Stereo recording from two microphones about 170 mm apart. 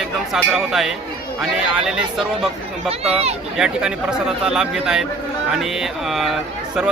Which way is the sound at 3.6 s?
5° right (ahead or behind).